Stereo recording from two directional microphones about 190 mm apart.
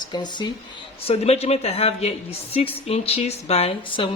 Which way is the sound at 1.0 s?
35° left (ahead or behind).